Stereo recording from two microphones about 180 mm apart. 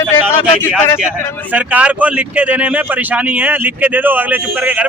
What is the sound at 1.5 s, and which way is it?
Speech, 10° right (ahead or behind).